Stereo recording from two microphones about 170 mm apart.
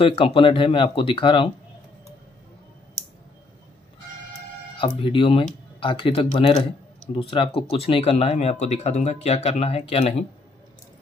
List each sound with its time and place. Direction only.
0.0 s speech: 30° left (ahead or behind)
4.7 s speech: 30° left (ahead or behind)